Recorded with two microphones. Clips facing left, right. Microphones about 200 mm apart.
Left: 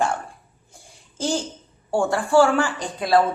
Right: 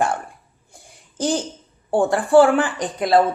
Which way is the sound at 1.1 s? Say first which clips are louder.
Right 3 dB; 15° right (ahead or behind).